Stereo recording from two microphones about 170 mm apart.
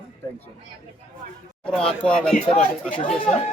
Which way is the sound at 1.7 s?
5° left (ahead or behind).